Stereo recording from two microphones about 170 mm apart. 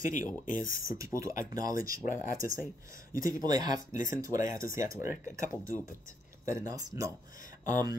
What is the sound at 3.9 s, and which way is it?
Speech, 50° left (ahead or behind).